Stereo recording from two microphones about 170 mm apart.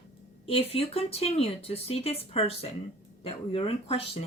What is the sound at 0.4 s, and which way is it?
Speech, 35° left (ahead or behind).